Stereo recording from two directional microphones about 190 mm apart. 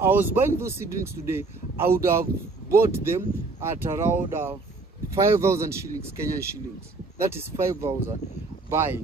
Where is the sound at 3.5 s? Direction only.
15° right (ahead or behind).